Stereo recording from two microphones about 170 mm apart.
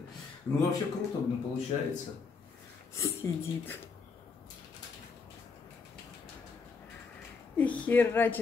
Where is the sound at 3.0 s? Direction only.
15° left (ahead or behind).